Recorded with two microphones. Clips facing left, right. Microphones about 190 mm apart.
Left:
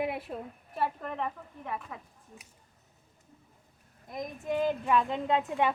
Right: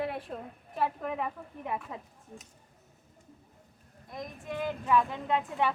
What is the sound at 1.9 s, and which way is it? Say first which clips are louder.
Speech: right 2 dB; 25° right (ahead or behind).